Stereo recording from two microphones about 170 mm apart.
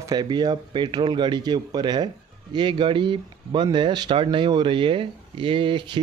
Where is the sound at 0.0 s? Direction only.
25° right (ahead or behind).